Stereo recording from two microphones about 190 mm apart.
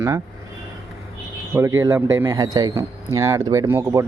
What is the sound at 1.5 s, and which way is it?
Speech, 15° right (ahead or behind).